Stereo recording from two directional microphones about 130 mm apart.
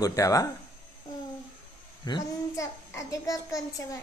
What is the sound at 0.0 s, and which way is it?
Speech, 25° left (ahead or behind).